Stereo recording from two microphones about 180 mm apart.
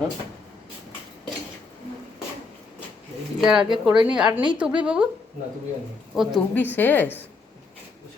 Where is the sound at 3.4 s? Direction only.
5° right (ahead or behind).